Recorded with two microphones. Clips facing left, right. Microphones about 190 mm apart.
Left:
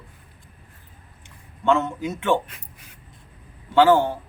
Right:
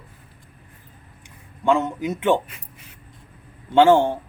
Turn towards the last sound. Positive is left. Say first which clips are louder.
# right 2 dB
turn(degrees=-25)  # may be behind; listen again after turning